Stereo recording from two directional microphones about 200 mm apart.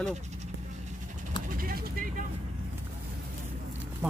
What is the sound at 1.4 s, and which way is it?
Speech, 45° right (ahead or behind).